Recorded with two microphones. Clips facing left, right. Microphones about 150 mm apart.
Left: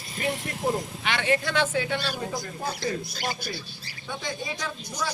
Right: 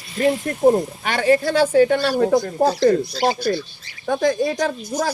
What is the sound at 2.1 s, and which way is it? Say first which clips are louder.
A woman's voice: right 14 dB; 65° right (ahead or behind).